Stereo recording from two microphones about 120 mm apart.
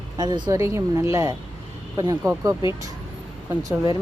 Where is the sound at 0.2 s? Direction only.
35° right (ahead or behind).